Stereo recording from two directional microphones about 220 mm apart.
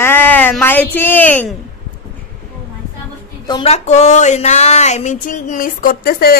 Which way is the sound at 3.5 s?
25° left (ahead or behind).